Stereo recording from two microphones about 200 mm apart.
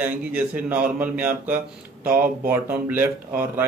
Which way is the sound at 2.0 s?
45° right (ahead or behind).